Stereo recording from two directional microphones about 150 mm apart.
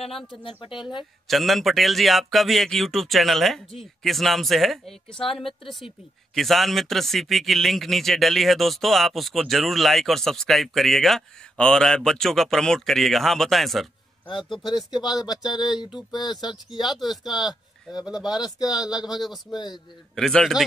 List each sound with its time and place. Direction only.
0.4 s speech: 35° left (ahead or behind)
1.2 s a man's voice: centre (ahead or behind)
15.0 s speech: 25° left (ahead or behind)
16.8 s a man's voice: centre (ahead or behind)
18.4 s speech: 25° left (ahead or behind)
19.1 s a man's voice: centre (ahead or behind)